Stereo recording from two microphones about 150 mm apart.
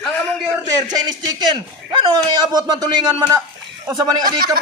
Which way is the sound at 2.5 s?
25° right (ahead or behind).